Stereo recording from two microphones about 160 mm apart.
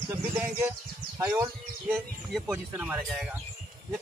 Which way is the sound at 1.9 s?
5° right (ahead or behind).